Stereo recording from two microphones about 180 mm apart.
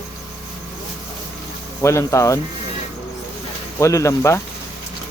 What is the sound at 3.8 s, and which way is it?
Speech, 15° left (ahead or behind).